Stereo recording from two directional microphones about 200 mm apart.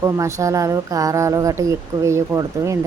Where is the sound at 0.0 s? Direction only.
15° right (ahead or behind).